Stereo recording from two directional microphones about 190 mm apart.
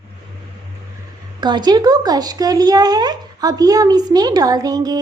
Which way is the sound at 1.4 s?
25° right (ahead or behind).